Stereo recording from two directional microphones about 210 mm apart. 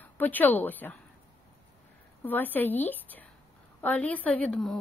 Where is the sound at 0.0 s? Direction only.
10° left (ahead or behind).